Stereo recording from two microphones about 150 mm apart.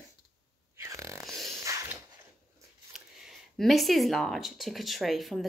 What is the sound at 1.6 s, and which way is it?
Mechanisms, 20° right (ahead or behind).